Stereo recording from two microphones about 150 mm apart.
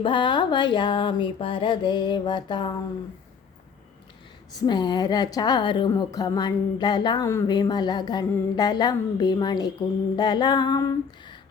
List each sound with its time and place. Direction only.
0.0 s a sound: 30° left (ahead or behind)
4.5 s music: 30° left (ahead or behind)
7.3 s speech: 15° left (ahead or behind)
7.5 s music: 25° left (ahead or behind)